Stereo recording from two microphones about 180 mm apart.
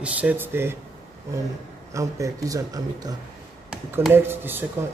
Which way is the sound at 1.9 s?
15° right (ahead or behind).